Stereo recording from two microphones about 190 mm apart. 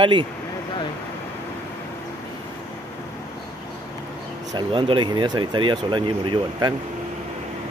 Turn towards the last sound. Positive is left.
turn(degrees=-25)  # may be behind; listen again after turning